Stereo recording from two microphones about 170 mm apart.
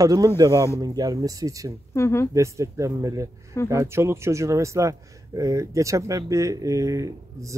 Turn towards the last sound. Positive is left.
turn(degrees=-20)  # may be behind; listen again after turning